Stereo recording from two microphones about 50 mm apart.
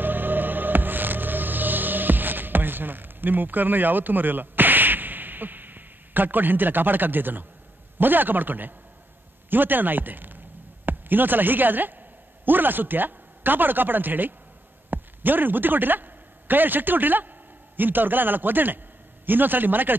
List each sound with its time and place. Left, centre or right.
0.0 s music: right
8.0 s speech: right